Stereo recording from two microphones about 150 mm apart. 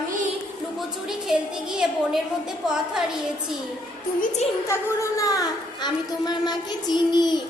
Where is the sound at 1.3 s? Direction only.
5° right (ahead or behind).